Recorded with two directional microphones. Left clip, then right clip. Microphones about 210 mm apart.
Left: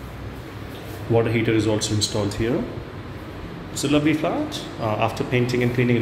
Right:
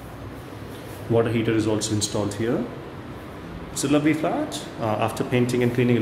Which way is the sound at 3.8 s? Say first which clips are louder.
Left 1 dB; 15° right (ahead or behind).